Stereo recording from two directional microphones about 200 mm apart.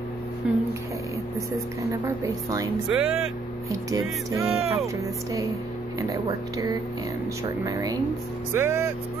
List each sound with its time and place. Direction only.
0.4 s a sound: 5° right (ahead or behind)
1.8 s a woman's voice: 15° right (ahead or behind)
2.9 s speech: 5° right (ahead or behind)
3.9 s a woman's voice: 15° right (ahead or behind)
4.6 s speech: 30° right (ahead or behind)
5.9 s a woman's voice: 15° right (ahead or behind)